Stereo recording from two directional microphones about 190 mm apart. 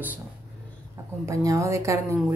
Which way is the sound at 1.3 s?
15° right (ahead or behind).